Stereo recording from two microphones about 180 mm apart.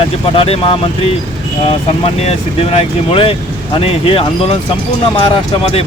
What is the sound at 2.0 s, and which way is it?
Speech, 35° left (ahead or behind).